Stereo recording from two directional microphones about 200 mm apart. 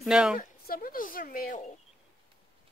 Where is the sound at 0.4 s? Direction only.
45° left (ahead or behind).